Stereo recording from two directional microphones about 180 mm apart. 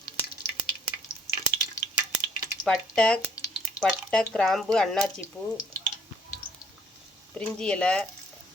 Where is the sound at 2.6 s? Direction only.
5° left (ahead or behind).